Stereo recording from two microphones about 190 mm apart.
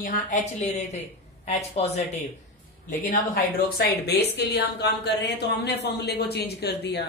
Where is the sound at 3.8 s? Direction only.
60° left (ahead or behind).